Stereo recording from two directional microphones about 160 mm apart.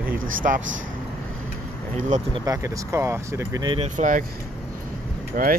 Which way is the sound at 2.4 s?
20° right (ahead or behind).